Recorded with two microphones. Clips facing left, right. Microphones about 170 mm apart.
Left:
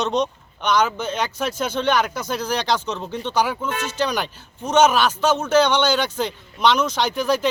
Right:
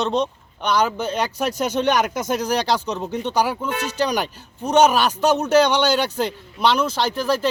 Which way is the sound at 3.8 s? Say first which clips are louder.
Right 2 dB; 40° right (ahead or behind).